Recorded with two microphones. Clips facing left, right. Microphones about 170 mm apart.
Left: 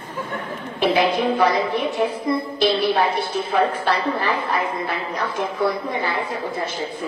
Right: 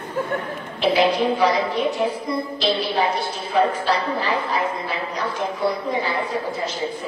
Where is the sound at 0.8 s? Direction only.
50° left (ahead or behind).